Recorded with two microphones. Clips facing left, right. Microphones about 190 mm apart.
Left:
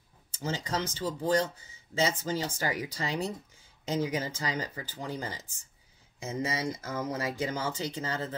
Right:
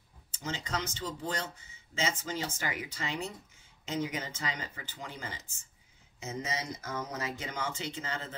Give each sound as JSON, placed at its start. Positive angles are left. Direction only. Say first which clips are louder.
{"t": 0.4, "sound": "speech", "louder": "left 4 dB", "side_deg": 35}